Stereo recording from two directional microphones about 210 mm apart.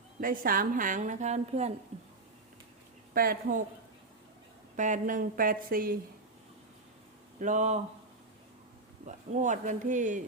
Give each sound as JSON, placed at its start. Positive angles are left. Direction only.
{"t": 0.2, "sound": "a woman's voice", "side_deg": -40}
{"t": 3.2, "sound": "a woman's voice", "side_deg": -45}
{"t": 4.8, "sound": "a woman's voice", "side_deg": -40}
{"t": 7.3, "sound": "a woman's voice", "side_deg": -35}
{"t": 9.0, "sound": "a woman's voice", "side_deg": -35}